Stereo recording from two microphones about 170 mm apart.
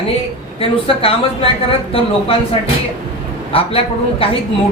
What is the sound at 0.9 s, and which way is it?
Speech, 35° left (ahead or behind).